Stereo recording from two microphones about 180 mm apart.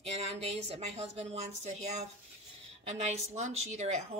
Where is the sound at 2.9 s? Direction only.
40° right (ahead or behind).